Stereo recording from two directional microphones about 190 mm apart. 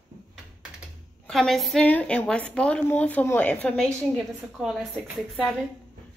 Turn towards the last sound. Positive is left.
turn(degrees=0)  # may be behind; listen again after turning